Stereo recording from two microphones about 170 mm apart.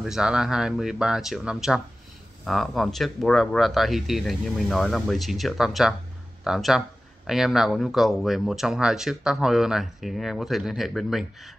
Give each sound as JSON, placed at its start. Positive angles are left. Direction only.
{"t": 0.0, "sound": "speech", "side_deg": -5}